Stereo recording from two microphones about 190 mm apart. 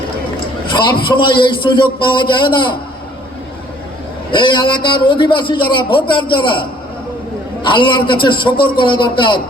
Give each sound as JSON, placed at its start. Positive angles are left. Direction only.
{"t": 0.7, "sound": "a man's voice", "side_deg": 25}
{"t": 4.3, "sound": "a man's voice", "side_deg": 25}